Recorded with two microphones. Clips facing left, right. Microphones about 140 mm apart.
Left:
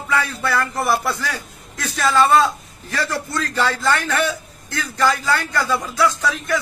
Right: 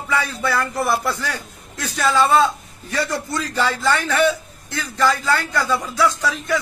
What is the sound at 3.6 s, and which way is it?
Speech, centre (ahead or behind).